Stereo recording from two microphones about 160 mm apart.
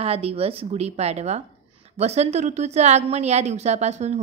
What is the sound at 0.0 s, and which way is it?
A woman's voice, 40° right (ahead or behind).